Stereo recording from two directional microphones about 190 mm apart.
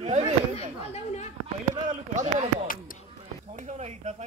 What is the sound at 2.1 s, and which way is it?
Speech, 40° right (ahead or behind).